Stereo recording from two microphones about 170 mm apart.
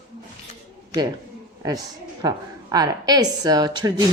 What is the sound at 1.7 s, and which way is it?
A woman's voice, 20° right (ahead or behind).